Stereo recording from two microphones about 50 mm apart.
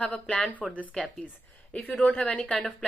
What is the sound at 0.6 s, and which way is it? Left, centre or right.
Speech, right.